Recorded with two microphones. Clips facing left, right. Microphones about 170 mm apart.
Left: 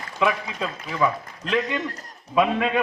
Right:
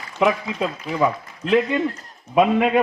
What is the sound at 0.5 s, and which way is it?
Speech, 20° right (ahead or behind).